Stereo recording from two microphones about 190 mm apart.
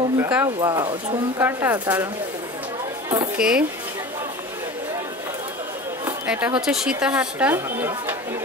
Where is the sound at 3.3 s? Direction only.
5° right (ahead or behind).